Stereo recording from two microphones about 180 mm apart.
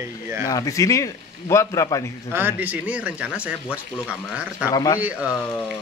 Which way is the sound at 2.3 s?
10° right (ahead or behind).